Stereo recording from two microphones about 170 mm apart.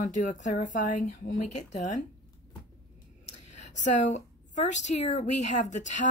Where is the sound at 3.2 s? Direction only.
40° left (ahead or behind).